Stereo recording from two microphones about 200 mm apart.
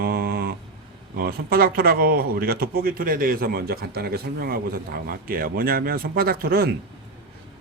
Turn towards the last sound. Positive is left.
turn(degrees=-50)  # may be behind; listen again after turning